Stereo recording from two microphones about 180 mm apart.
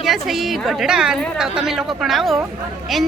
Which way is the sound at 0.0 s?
Centre (ahead or behind).